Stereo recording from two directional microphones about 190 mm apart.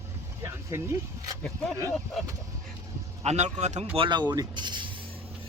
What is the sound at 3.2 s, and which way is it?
Speech, 35° right (ahead or behind).